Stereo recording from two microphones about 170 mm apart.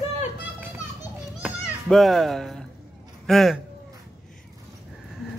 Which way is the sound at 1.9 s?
Centre (ahead or behind).